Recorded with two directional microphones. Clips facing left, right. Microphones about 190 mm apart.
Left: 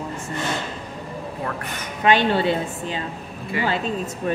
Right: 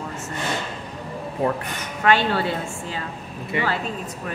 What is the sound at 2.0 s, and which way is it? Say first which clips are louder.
Speech: left 2 dB; 20° left (ahead or behind).